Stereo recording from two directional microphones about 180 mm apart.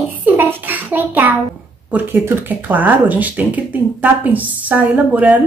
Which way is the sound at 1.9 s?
10° right (ahead or behind).